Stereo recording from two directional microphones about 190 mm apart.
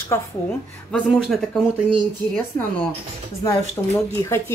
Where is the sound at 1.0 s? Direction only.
Centre (ahead or behind).